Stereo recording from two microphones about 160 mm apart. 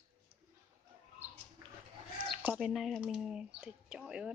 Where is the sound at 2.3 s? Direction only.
5° right (ahead or behind).